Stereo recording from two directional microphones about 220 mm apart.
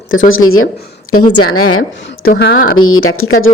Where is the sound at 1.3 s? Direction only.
85° left.